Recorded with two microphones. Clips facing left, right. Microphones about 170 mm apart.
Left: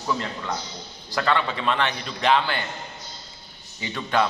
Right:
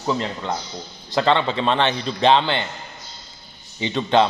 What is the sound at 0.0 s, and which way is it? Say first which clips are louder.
A man's voice: right 4 dB; 25° right (ahead or behind).